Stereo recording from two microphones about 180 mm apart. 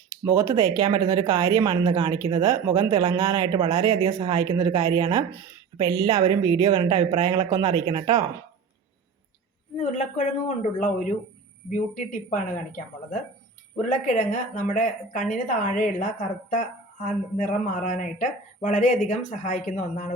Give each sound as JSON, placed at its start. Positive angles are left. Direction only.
{"t": 0.1, "sound": "speech", "side_deg": -15}
{"t": 10.2, "sound": "speech", "side_deg": 45}